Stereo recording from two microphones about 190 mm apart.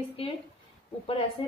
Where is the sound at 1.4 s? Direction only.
30° left (ahead or behind).